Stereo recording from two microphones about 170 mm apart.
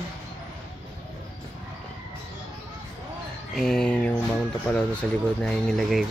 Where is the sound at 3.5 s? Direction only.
5° left (ahead or behind).